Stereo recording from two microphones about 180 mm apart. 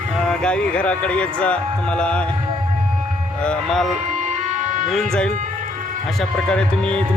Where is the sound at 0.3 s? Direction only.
5° left (ahead or behind).